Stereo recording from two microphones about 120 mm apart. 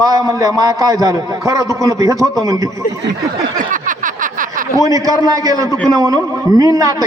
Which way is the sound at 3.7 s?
90° right.